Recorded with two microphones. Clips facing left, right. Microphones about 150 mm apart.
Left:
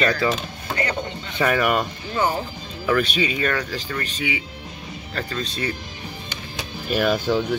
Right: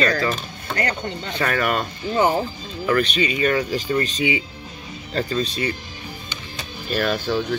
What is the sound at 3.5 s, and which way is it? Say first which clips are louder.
Speech: right 6 dB; 20° right (ahead or behind).